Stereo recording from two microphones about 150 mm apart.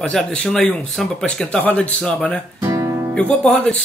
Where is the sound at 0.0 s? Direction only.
5° left (ahead or behind).